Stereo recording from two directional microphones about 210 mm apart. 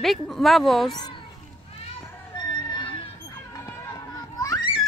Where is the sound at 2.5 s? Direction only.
25° left (ahead or behind).